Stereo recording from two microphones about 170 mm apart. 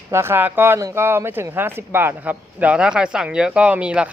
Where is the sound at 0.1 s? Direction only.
15° right (ahead or behind).